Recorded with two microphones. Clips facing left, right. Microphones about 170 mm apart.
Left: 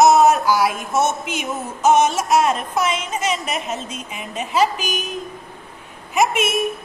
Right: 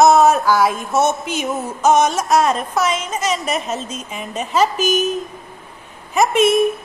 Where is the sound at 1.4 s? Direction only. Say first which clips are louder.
Right 3 dB; 40° right (ahead or behind).